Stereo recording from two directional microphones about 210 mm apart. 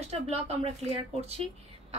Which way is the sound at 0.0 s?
30° right (ahead or behind).